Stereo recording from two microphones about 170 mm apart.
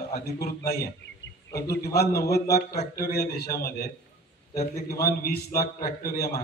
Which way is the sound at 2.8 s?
65° left (ahead or behind).